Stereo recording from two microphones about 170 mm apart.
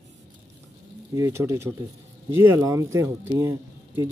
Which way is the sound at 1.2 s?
20° right (ahead or behind).